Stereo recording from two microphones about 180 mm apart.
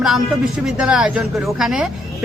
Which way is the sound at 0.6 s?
5° right (ahead or behind).